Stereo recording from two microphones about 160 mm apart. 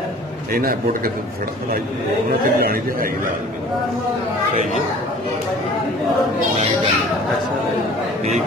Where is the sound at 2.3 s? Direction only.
75° right (ahead or behind).